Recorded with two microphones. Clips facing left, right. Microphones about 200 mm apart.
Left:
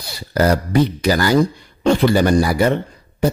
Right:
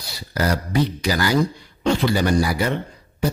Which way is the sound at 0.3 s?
50° left (ahead or behind).